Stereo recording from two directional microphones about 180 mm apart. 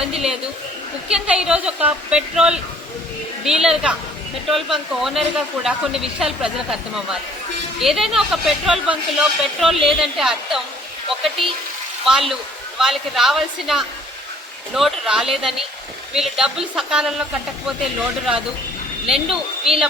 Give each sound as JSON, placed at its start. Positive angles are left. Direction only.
{"t": 0.0, "sound": "speech", "side_deg": -5}
{"t": 19.0, "sound": "a woman's voice", "side_deg": -5}